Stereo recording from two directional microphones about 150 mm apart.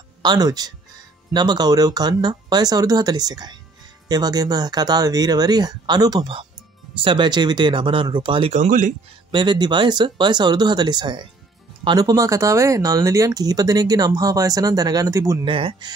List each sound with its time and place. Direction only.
0.2 s speech: 25° right (ahead or behind)
8.5 s speech: 60° right (ahead or behind)
9.3 s speech: 30° right (ahead or behind)
15.4 s speech: 35° right (ahead or behind)